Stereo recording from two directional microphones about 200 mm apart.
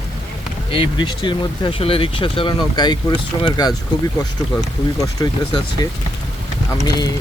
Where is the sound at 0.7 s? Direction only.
25° left (ahead or behind).